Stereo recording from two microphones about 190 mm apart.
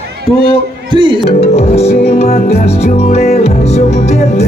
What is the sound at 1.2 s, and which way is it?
Music, 35° left (ahead or behind).